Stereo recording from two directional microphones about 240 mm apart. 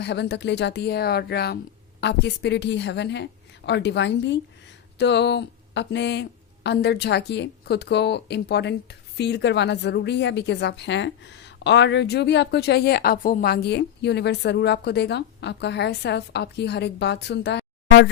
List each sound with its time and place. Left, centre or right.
0.0 s a woman's voice: left